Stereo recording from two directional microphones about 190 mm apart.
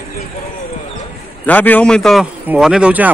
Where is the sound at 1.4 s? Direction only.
10° left (ahead or behind); by 3.1 s 5° right (ahead or behind).